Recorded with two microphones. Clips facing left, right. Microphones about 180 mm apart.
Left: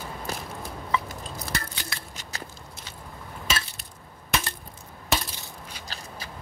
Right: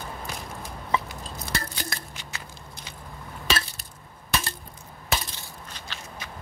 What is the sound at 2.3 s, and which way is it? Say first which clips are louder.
Biting: left 4 dB; 35° left (ahead or behind).